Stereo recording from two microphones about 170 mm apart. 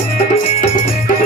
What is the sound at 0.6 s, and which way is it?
Music, 45° left (ahead or behind).